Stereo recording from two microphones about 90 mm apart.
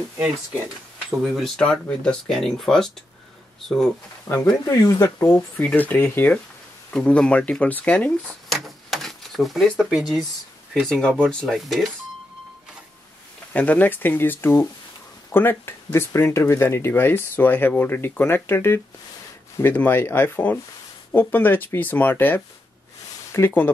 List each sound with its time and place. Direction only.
1.2 s speech: centre (ahead or behind)
1.6 s speech: 10° left (ahead or behind)
4.3 s speech: 30° left (ahead or behind)
5.6 s speech: 15° left (ahead or behind)
6.9 s speech: 10° left (ahead or behind)
8.5 s a sound: centre (ahead or behind)
10.7 s speech: 5° left (ahead or behind)
11.4 s speech: centre (ahead or behind)
13.5 s speech: 15° left (ahead or behind)